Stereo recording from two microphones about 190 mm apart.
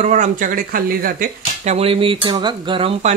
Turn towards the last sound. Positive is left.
turn(degrees=-30)  # may be behind; listen again after turning